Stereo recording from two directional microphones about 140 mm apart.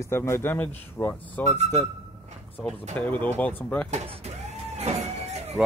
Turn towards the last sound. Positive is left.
turn(degrees=-50)  # may be behind; listen again after turning